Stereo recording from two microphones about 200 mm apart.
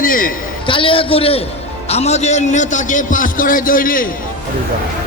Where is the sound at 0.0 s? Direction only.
45° left (ahead or behind).